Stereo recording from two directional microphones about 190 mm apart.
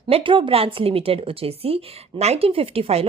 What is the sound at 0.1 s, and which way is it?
Speech, 25° right (ahead or behind).